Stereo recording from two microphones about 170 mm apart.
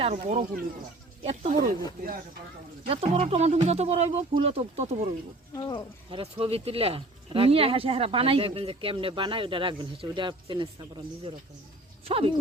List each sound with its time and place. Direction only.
0.0 s speech: 40° right (ahead or behind)
2.8 s speech: 35° right (ahead or behind)
5.5 s speech: 25° left (ahead or behind)
6.1 s speech: 30° right (ahead or behind)
12.0 s speech: 35° right (ahead or behind)